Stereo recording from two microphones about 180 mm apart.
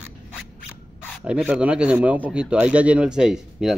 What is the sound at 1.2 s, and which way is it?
Speech, 5° right (ahead or behind).